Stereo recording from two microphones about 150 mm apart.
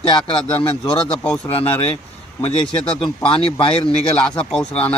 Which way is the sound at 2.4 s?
40° left (ahead or behind).